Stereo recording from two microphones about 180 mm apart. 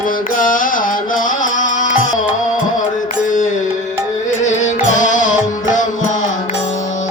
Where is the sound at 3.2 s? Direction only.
45° left (ahead or behind).